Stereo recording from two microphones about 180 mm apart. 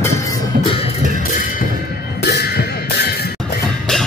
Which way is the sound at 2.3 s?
60° left (ahead or behind).